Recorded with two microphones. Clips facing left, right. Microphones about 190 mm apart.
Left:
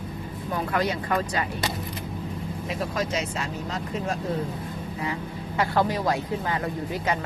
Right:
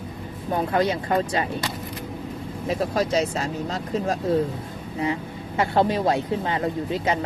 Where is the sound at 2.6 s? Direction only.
35° right (ahead or behind).